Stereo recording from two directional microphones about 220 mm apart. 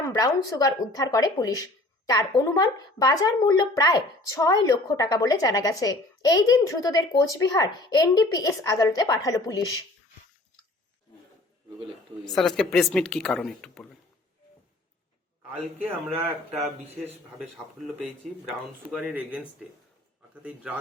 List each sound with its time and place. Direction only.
0.0 s speech: 15° left (ahead or behind)
12.2 s speech: centre (ahead or behind)
15.8 s a man's voice: 10° right (ahead or behind)
18.9 s speech: 5° right (ahead or behind)
20.7 s speech: 5° right (ahead or behind)